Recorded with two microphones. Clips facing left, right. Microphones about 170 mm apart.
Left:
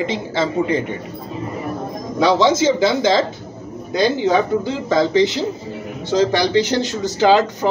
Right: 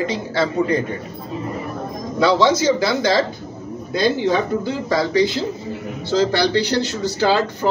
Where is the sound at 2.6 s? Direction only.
25° left (ahead or behind).